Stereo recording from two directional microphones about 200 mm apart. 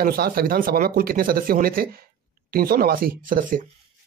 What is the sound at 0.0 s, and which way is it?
Speech, 50° right (ahead or behind).